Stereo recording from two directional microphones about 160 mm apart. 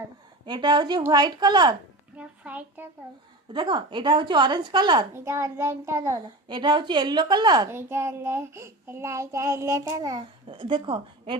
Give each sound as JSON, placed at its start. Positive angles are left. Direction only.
{"t": 0.4, "sound": "a child's voice", "side_deg": -30}
{"t": 2.1, "sound": "child singing", "side_deg": -10}
{"t": 3.5, "sound": "a child's voice", "side_deg": -30}
{"t": 5.1, "sound": "a child's voice", "side_deg": -15}
{"t": 7.7, "sound": "child singing", "side_deg": -15}